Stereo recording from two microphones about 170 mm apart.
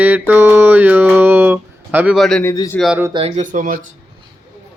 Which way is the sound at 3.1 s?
40° right (ahead or behind).